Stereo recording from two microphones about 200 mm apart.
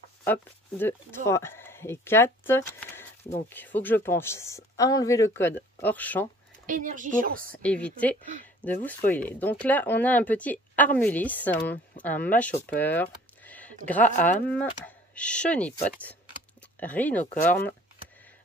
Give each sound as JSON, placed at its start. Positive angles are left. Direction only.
{"t": 0.2, "sound": "speech", "side_deg": 10}
{"t": 6.6, "sound": "a woman's voice", "side_deg": -40}
{"t": 7.6, "sound": "speech", "side_deg": 5}
{"t": 16.8, "sound": "speech", "side_deg": 10}